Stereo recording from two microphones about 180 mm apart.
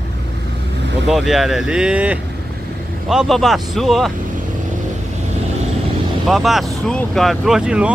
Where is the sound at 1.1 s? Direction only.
Centre (ahead or behind).